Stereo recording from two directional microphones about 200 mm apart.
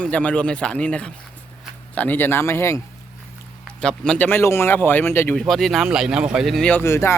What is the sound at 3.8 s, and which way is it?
Speech, 5° left (ahead or behind).